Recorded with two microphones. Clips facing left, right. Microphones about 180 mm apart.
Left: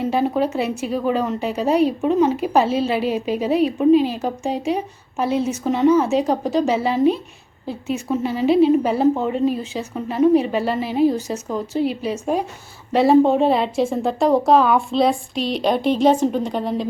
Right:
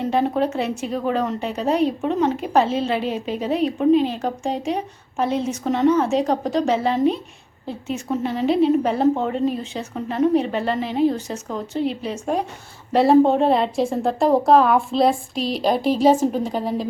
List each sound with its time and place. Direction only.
0.0 s a woman's voice: 5° left (ahead or behind)